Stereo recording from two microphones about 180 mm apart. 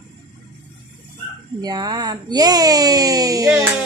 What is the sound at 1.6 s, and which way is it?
Speech, 20° right (ahead or behind).